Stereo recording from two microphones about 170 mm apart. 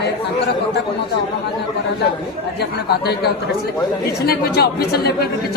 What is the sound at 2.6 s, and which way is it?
Speech, 70° left (ahead or behind).